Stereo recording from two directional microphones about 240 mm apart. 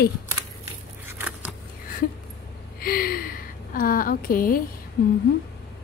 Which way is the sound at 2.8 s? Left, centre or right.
Left.